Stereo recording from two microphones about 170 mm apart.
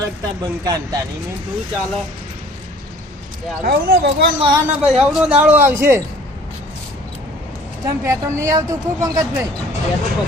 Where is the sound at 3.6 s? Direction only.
65° right (ahead or behind).